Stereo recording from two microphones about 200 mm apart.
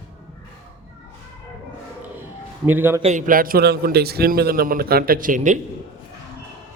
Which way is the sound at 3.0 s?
35° right (ahead or behind).